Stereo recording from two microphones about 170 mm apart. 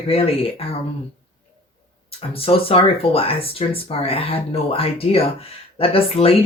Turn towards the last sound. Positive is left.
turn(degrees=35)  # may be behind; listen again after turning